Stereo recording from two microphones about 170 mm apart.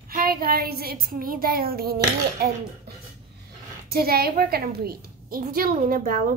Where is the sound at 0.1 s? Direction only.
60° right (ahead or behind).